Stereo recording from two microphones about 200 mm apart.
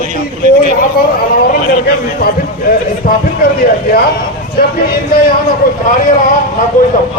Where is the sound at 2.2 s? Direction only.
45° left (ahead or behind).